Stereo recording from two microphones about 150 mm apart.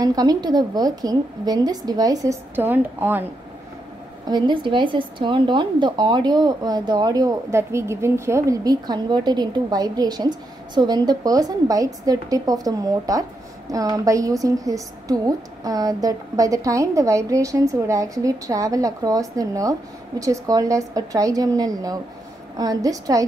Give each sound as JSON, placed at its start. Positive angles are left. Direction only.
{"t": 0.0, "sound": "a woman's voice", "side_deg": -25}
{"t": 4.3, "sound": "a woman's voice", "side_deg": -30}